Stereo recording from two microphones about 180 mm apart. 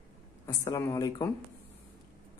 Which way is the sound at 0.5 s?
15° left (ahead or behind).